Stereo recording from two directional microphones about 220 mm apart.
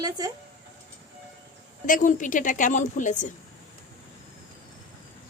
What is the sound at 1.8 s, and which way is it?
A woman's voice, 35° left (ahead or behind).